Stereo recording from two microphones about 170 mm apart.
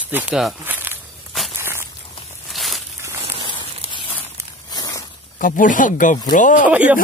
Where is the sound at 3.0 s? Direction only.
15° right (ahead or behind).